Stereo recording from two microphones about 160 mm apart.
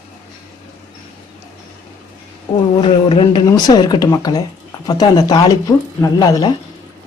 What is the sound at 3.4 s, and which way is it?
Speech, 25° left (ahead or behind).